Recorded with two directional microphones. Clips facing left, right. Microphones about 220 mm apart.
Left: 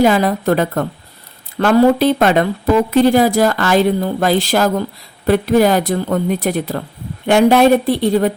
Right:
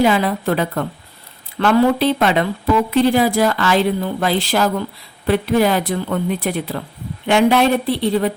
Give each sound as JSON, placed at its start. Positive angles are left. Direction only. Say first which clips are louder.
{"t": 0.0, "sound": "a woman's voice", "louder": "left 3 dB", "side_deg": 45}